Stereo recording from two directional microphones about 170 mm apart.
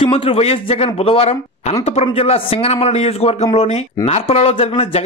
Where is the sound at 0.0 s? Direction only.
35° left (ahead or behind).